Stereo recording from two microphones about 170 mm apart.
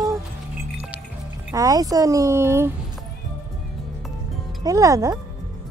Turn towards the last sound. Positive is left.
turn(degrees=-20)  # may be behind; listen again after turning